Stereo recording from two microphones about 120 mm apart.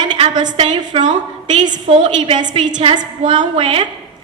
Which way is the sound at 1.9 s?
70° right (ahead or behind).